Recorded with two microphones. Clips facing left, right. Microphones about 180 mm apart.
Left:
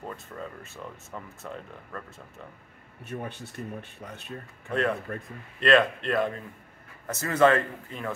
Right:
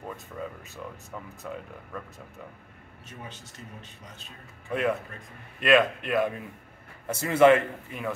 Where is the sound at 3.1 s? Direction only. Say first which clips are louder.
Left 8 dB; 60° left (ahead or behind).